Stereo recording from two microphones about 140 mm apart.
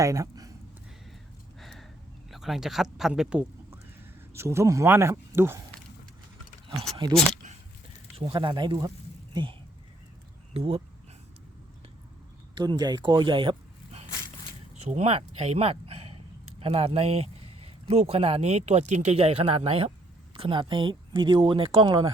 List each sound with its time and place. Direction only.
0.0 s speech: 25° right (ahead or behind)
1.5 s a sound: centre (ahead or behind)
2.3 s speech: centre (ahead or behind)
3.7 s a sound: 20° right (ahead or behind)
8.1 s speech: 40° right (ahead or behind)
12.5 s speech: 30° right (ahead or behind)